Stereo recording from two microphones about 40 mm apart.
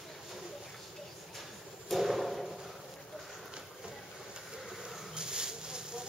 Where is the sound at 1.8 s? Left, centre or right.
Centre.